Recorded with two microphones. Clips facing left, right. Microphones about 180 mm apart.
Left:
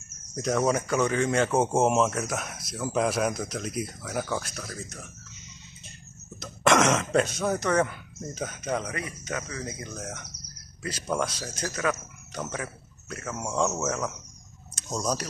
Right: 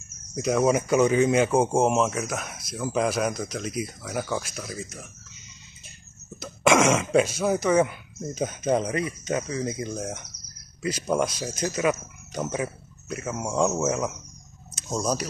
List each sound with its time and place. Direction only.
0.4 s speech: 5° right (ahead or behind)
1.5 s speech: centre (ahead or behind)
6.4 s speech: centre (ahead or behind)
8.6 s speech: 25° right (ahead or behind); by 15.2 s 5° right (ahead or behind)